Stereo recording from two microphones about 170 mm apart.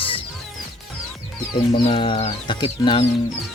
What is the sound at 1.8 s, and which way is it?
Speech, 30° left (ahead or behind).